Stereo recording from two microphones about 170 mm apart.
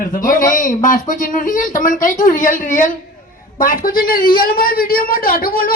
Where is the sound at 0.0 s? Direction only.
55° left (ahead or behind).